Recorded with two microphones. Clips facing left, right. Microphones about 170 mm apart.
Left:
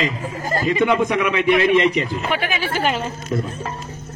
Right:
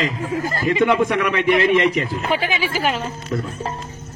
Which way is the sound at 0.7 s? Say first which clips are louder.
Right 1 dB; centre (ahead or behind).